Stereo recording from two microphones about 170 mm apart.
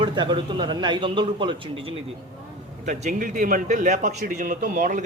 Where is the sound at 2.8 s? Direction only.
45° right (ahead or behind).